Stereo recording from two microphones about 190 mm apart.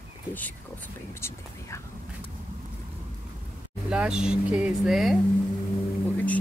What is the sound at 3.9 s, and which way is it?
Speech, 5° right (ahead or behind).